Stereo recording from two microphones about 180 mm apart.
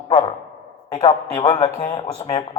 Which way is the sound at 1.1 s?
25° left (ahead or behind).